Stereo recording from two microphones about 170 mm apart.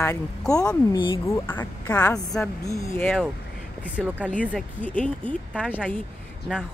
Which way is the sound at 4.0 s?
5° right (ahead or behind).